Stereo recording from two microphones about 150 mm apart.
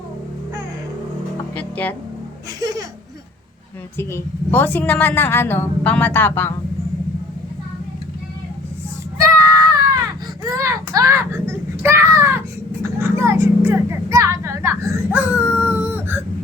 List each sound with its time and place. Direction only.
1.5 s music: 10° left (ahead or behind)
2.6 s speech: 25° right (ahead or behind)
3.9 s a woman's voice: 15° left (ahead or behind)
9.2 s baby cry: 20° right (ahead or behind)
13.0 s vehicle: 15° right (ahead or behind)